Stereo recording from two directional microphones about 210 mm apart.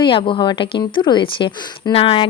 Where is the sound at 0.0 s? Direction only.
25° left (ahead or behind).